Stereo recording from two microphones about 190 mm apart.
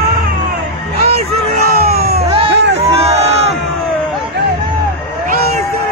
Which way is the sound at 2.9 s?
35° right (ahead or behind).